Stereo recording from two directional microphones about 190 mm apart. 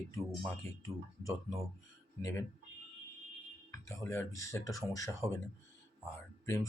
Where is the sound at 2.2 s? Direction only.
15° left (ahead or behind).